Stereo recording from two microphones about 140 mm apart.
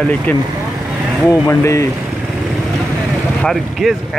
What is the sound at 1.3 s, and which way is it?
Speech, 20° left (ahead or behind).